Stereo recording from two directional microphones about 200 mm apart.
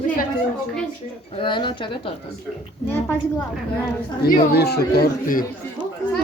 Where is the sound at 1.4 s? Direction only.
25° left (ahead or behind).